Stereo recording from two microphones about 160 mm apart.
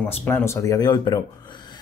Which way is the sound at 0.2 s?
15° left (ahead or behind).